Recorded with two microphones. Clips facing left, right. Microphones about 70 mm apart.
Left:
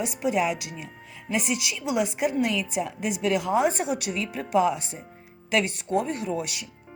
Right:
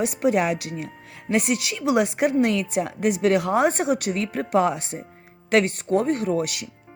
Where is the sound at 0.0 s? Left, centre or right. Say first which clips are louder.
Right 4 dB; right.